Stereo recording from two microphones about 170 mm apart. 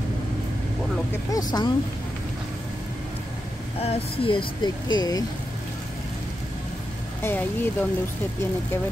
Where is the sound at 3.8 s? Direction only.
30° left (ahead or behind).